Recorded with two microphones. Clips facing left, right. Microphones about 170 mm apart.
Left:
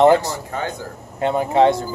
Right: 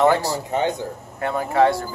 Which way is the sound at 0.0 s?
20° left (ahead or behind).